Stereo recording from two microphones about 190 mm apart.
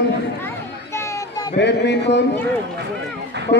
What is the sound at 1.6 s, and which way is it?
Speech, 65° left (ahead or behind).